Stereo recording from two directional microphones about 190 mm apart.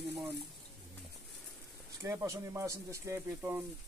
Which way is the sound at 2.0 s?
15° right (ahead or behind).